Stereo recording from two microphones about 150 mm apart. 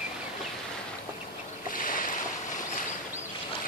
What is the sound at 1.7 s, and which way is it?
Boat, 65° left (ahead or behind).